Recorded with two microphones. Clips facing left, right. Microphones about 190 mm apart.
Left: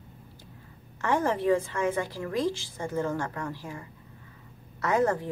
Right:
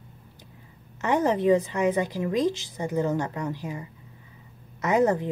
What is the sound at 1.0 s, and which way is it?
A woman's voice, 20° right (ahead or behind).